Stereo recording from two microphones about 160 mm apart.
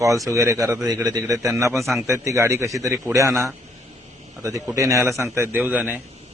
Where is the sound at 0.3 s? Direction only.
20° right (ahead or behind).